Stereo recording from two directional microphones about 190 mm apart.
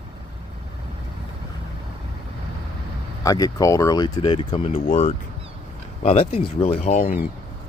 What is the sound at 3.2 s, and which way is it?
Speech, 20° left (ahead or behind).